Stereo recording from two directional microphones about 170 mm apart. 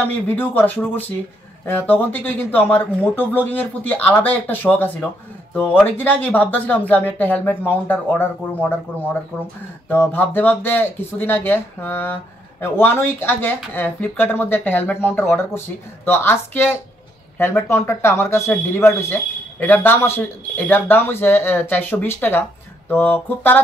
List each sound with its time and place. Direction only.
0.0 s speech: 10° left (ahead or behind)